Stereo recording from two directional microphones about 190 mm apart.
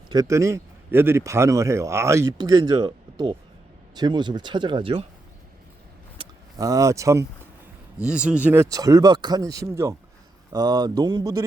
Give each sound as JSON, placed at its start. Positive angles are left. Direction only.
{"t": 0.1, "sound": "a man's voice", "side_deg": -15}
{"t": 6.1, "sound": "a sound", "side_deg": -20}
{"t": 8.0, "sound": "speech", "side_deg": -5}
{"t": 8.7, "sound": "speech", "side_deg": -20}